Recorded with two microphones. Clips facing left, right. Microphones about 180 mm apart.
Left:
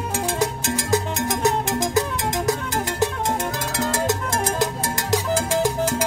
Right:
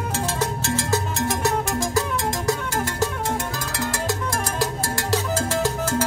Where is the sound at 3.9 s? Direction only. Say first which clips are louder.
Left 3 dB; 20° left (ahead or behind).